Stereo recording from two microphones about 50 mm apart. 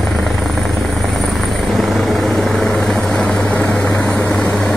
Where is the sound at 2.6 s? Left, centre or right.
Centre.